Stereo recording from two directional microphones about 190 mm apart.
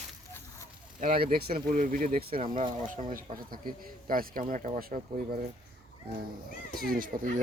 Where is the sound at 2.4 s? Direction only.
25° right (ahead or behind).